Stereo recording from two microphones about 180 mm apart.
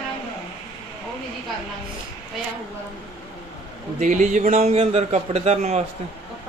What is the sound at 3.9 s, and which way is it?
A man's voice, 45° right (ahead or behind).